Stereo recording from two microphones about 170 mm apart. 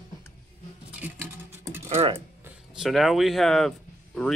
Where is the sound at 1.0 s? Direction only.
10° right (ahead or behind).